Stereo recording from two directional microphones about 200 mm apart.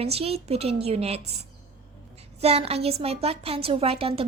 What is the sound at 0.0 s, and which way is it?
A woman's voice, 30° right (ahead or behind).